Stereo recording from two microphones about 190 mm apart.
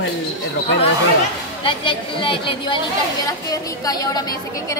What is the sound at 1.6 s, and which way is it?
A woman's voice, 25° left (ahead or behind).